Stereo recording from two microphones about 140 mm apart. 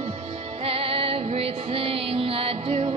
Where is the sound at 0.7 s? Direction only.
45° right (ahead or behind).